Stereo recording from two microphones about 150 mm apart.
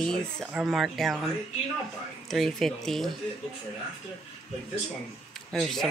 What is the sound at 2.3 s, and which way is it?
Speech, centre (ahead or behind).